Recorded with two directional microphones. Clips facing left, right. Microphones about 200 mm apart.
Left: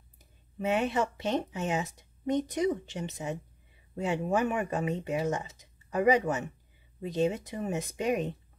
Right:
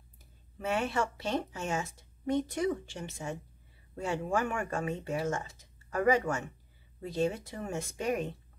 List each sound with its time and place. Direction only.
0.2 s speech: 20° left (ahead or behind)